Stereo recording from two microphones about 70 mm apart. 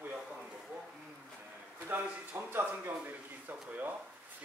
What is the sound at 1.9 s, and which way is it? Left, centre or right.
Speech, right.